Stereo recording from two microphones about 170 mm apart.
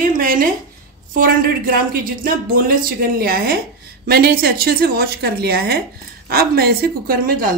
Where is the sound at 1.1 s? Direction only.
55° right (ahead or behind).